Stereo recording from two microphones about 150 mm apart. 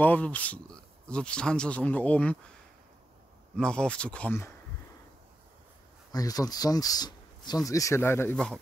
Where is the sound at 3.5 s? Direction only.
5° left (ahead or behind).